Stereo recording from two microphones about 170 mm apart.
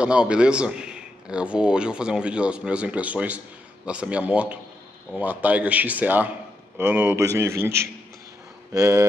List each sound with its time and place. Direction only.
0.0 s a man's voice: 5° right (ahead or behind)